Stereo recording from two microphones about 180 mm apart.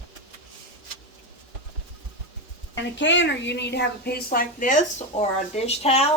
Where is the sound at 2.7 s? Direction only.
90° left; by 6.0 s 35° left (ahead or behind).